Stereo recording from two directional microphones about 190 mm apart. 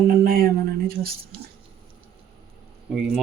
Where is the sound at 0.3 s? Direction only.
50° right (ahead or behind).